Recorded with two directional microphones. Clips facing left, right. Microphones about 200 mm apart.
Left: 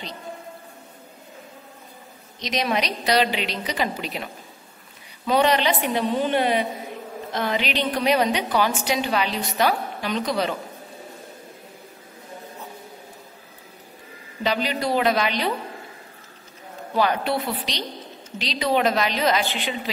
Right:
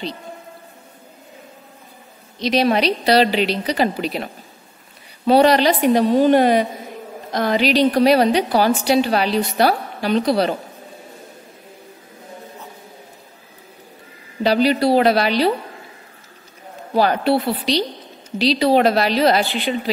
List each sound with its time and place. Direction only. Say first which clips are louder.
2.4 s a woman's voice: right 8 dB; 30° right (ahead or behind)
14.4 s a woman's voice: right 8 dB; 35° right (ahead or behind)
16.9 s a woman's voice: right 6 dB; 35° right (ahead or behind)